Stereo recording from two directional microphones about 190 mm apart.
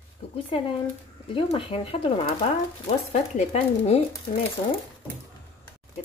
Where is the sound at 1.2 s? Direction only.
30° left (ahead or behind).